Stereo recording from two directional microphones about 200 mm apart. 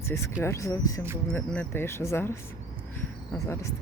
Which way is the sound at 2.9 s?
10° left (ahead or behind).